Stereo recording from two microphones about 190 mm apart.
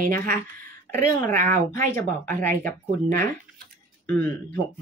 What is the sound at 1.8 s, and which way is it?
Speech, 10° left (ahead or behind).